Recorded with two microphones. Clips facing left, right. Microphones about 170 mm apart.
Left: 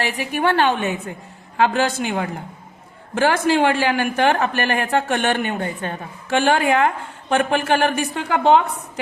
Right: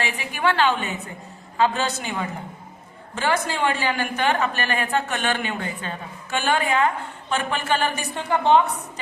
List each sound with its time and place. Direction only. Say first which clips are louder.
0.0 s a woman's voice: left 4 dB; 55° left (ahead or behind)
1.5 s a woman's voice: left 4 dB; 70° left (ahead or behind)
3.2 s a woman's voice: left 7 dB; 85° left; by 6.7 s 60° left (ahead or behind)
7.3 s a woman's voice: left 6 dB; 50° left (ahead or behind); by 8.6 s 85° left